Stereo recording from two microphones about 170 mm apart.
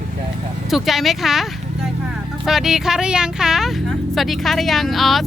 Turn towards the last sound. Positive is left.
turn(degrees=0)  # may be behind; listen again after turning